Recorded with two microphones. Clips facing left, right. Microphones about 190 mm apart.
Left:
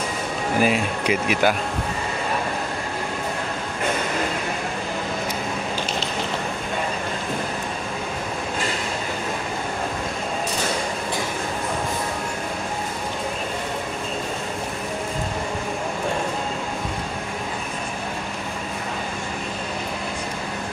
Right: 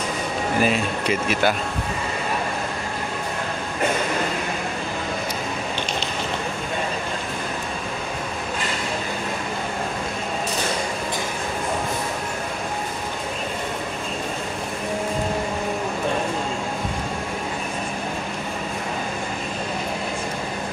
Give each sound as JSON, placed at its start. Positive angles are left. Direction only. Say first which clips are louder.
{"t": 0.6, "sound": "speech", "louder": "left 1 dB", "side_deg": 10}